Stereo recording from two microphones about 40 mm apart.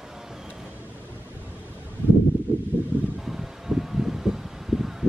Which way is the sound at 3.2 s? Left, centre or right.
Centre.